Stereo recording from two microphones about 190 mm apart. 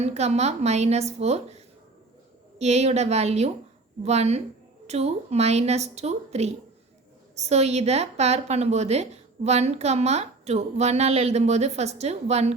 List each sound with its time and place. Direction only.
0.0 s a woman's voice: 35° right (ahead or behind)